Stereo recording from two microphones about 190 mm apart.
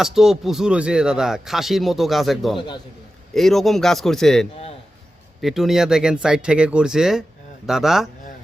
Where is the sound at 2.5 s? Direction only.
25° left (ahead or behind).